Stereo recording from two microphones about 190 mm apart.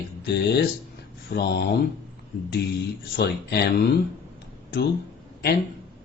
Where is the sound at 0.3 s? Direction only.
60° left (ahead or behind).